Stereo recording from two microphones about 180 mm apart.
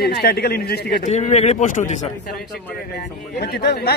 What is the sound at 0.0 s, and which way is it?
Speech, 65° left (ahead or behind).